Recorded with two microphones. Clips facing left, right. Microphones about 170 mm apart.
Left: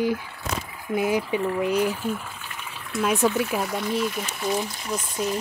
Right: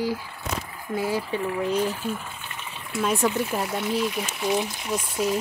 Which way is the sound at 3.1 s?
15° right (ahead or behind).